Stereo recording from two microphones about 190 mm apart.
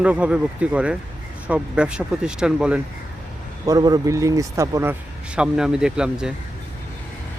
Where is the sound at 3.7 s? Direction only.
20° right (ahead or behind).